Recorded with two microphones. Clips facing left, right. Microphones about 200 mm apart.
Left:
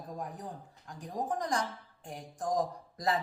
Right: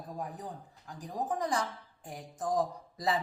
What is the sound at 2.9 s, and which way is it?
Speech, centre (ahead or behind).